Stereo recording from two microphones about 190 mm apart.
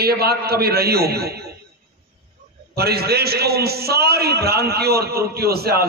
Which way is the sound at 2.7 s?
55° right (ahead or behind).